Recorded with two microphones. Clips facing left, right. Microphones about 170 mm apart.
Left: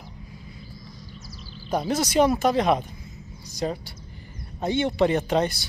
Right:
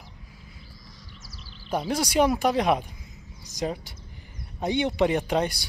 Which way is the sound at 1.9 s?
10° right (ahead or behind).